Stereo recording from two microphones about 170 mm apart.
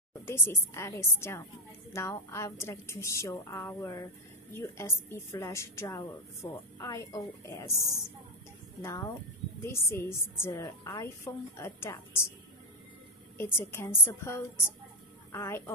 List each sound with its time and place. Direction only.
0.2 s a woman's voice: 15° left (ahead or behind)
13.4 s a woman's voice: 15° left (ahead or behind)